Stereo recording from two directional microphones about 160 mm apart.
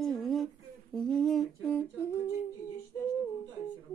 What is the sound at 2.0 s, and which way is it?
Humming, 15° left (ahead or behind).